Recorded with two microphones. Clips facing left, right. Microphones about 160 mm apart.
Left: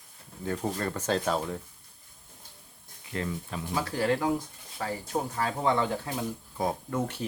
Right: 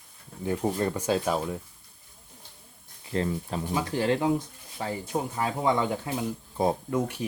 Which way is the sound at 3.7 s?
20° right (ahead or behind).